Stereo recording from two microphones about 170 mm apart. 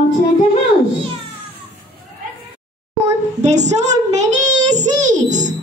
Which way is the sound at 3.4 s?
45° right (ahead or behind).